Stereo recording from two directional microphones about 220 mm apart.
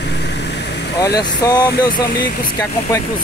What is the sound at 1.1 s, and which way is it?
Speech, 55° left (ahead or behind).